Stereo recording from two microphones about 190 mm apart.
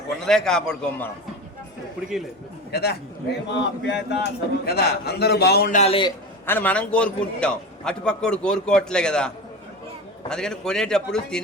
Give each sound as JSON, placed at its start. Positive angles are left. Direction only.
{"t": 0.3, "sound": "a man's voice", "side_deg": 5}
{"t": 2.7, "sound": "a man's voice", "side_deg": 60}
{"t": 5.7, "sound": "a man's voice", "side_deg": 30}
{"t": 6.4, "sound": "a man's voice", "side_deg": 10}